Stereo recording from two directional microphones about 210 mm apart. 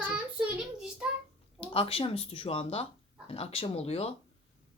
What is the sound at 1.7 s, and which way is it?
A woman's voice, 25° left (ahead or behind).